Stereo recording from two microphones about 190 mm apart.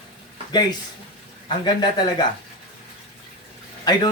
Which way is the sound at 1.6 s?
20° left (ahead or behind).